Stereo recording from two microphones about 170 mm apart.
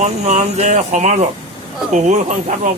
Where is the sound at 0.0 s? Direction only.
40° right (ahead or behind).